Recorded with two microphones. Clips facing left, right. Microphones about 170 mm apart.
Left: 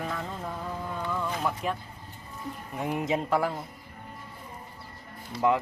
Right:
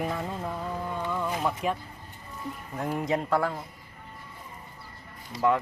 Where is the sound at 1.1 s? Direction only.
10° right (ahead or behind).